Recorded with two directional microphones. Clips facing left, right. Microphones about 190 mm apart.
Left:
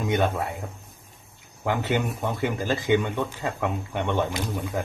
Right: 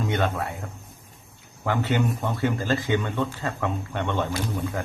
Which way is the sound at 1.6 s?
15° left (ahead or behind).